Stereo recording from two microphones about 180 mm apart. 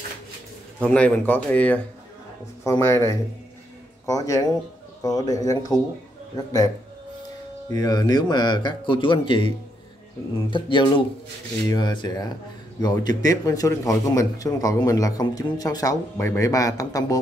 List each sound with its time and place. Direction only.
0.7 s a man's voice: 5° left (ahead or behind)
7.7 s a man's voice: 20° left (ahead or behind)
10.5 s a man's voice: 25° left (ahead or behind)